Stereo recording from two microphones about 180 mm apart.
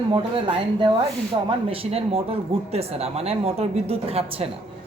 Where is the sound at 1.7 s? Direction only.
30° right (ahead or behind).